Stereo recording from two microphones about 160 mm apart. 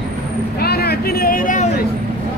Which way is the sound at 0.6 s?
80° left.